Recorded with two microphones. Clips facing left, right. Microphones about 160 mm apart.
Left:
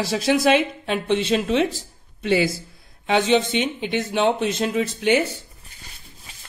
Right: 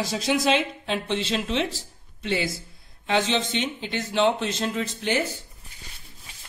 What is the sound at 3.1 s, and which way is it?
Speech, 55° left (ahead or behind).